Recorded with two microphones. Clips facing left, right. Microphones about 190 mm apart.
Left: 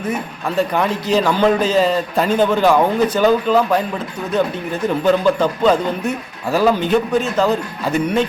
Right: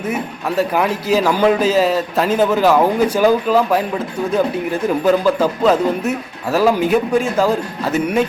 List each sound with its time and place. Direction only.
0.1 s a man's voice: 5° right (ahead or behind)